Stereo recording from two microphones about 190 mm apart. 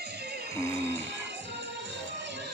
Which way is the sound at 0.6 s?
15° left (ahead or behind).